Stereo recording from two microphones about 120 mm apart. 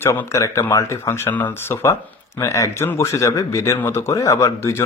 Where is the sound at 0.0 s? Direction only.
20° left (ahead or behind).